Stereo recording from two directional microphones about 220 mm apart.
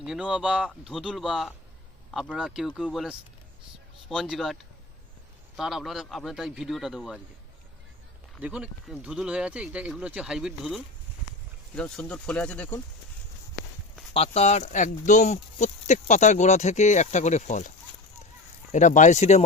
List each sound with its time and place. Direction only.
0.0 s speech: 5° right (ahead or behind)
5.5 s speech: centre (ahead or behind)
8.4 s speech: 5° right (ahead or behind)
14.1 s speech: 25° left (ahead or behind)
18.7 s speech: 35° left (ahead or behind)